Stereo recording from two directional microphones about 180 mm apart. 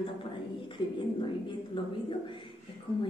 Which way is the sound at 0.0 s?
30° left (ahead or behind).